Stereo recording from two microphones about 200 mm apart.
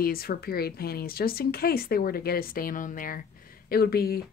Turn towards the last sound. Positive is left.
turn(degrees=50)  # may be behind; listen again after turning